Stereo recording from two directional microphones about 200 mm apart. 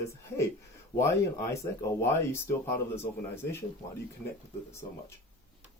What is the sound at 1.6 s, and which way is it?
Speech, 20° left (ahead or behind).